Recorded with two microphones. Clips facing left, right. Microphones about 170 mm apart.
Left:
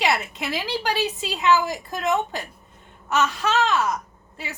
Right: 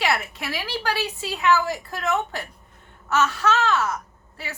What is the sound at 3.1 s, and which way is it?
Wail, 20° left (ahead or behind).